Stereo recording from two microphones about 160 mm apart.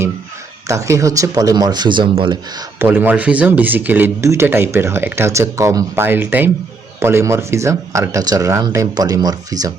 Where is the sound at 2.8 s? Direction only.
10° right (ahead or behind).